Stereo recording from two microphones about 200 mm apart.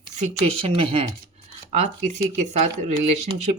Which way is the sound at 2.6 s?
35° right (ahead or behind).